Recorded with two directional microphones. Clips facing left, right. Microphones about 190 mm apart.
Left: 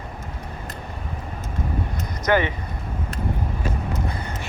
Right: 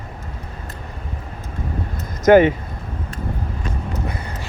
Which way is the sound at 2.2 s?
50° right (ahead or behind).